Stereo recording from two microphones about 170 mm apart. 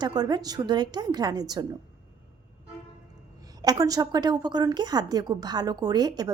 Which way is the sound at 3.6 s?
20° right (ahead or behind).